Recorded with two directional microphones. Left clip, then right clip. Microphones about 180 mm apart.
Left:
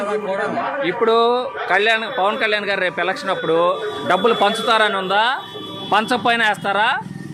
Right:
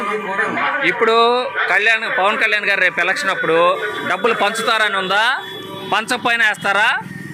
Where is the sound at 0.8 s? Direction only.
15° left (ahead or behind).